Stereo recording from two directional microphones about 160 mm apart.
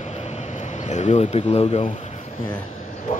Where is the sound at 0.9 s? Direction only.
45° left (ahead or behind).